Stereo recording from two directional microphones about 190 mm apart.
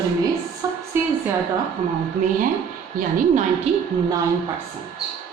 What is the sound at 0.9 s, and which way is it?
Speech, 10° right (ahead or behind).